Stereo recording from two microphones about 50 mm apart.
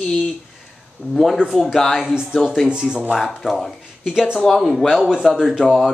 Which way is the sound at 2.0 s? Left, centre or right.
Centre.